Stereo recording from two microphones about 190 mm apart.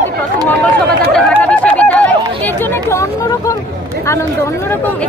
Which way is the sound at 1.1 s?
5° left (ahead or behind).